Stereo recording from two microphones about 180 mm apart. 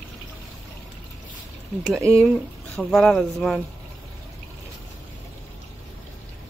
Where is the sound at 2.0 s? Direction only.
15° right (ahead or behind).